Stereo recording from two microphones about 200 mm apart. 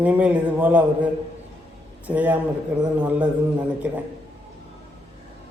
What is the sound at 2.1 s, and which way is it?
A man's voice, 10° right (ahead or behind).